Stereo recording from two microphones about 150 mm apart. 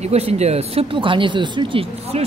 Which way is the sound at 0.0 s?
45° right (ahead or behind).